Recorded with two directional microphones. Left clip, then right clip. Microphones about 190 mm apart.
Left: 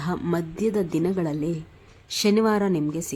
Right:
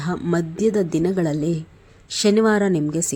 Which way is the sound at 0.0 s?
5° right (ahead or behind).